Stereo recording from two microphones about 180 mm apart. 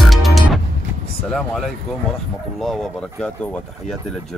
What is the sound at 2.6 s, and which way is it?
Speech, centre (ahead or behind).